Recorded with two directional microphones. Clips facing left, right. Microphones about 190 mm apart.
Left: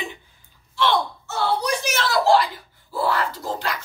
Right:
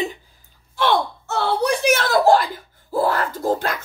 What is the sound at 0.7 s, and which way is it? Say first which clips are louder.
Gasp: right 2 dB; 60° right (ahead or behind).